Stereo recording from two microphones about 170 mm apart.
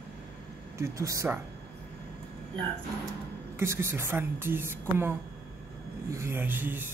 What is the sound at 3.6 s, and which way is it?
A man's voice, 15° right (ahead or behind).